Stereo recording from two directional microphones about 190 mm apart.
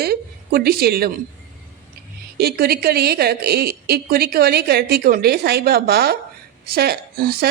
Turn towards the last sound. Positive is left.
turn(degrees=-55)  # may be behind; listen again after turning